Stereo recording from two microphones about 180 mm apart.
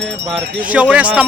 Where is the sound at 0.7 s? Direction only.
5° right (ahead or behind).